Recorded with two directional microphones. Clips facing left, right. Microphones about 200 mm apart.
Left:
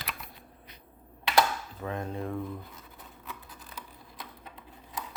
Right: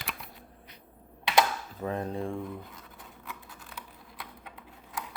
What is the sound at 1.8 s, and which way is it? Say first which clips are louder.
Speech: right 3 dB; 35° right (ahead or behind).